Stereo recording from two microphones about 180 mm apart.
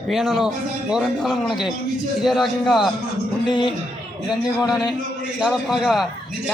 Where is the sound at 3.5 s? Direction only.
25° left (ahead or behind).